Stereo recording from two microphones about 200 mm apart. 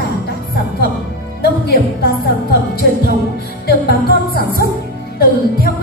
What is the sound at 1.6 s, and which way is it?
Music, 50° left (ahead or behind).